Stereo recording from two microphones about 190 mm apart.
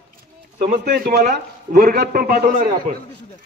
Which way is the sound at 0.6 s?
45° right (ahead or behind).